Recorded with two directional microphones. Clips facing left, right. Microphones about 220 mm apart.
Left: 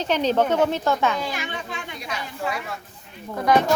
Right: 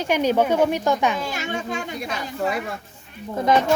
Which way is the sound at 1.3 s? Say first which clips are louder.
Right 4 dB; 45° right (ahead or behind).